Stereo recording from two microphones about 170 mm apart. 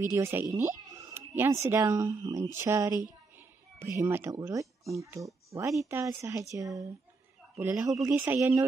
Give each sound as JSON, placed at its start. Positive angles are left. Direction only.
{"t": 0.1, "sound": "speech", "side_deg": -15}